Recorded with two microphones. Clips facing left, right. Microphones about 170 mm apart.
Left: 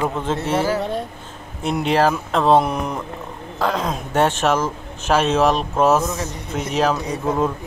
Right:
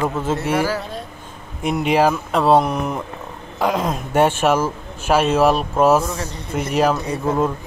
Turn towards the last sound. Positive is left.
turn(degrees=-5)  # may be behind; listen again after turning